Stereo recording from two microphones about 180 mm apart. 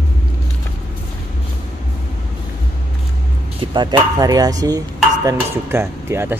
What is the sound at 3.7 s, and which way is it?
Speech, 25° right (ahead or behind).